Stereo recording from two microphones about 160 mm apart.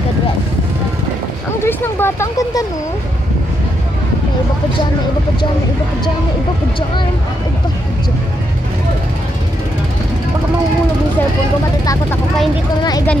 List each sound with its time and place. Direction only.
1.6 s vehicle: 15° left (ahead or behind)
11.8 s speech: 20° left (ahead or behind)